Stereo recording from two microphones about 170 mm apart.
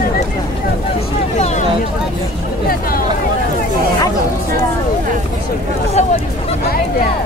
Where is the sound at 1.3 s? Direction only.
40° left (ahead or behind).